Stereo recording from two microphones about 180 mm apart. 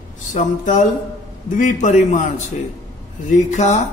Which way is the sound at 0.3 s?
45° left (ahead or behind).